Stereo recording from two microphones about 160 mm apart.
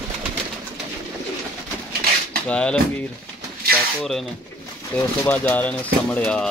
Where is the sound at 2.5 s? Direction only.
5° left (ahead or behind).